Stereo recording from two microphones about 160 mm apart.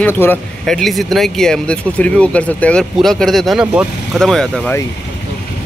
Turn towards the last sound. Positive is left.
turn(degrees=5)  # may be behind; listen again after turning